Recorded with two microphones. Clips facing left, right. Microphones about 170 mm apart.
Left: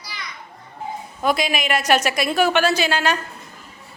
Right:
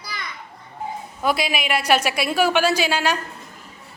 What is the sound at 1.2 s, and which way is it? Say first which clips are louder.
A woman's voice: left 1 dB; 5° right (ahead or behind).